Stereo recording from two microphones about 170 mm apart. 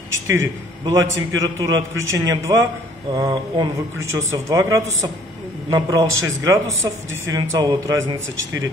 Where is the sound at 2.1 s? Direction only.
20° right (ahead or behind).